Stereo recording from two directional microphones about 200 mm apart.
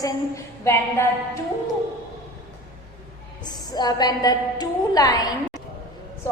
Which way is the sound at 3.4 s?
20° left (ahead or behind).